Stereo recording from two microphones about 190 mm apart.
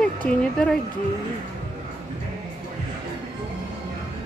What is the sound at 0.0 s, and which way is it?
Speech, 5° left (ahead or behind).